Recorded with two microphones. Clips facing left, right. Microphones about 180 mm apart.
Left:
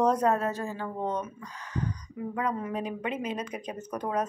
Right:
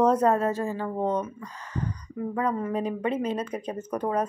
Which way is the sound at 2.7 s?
35° right (ahead or behind).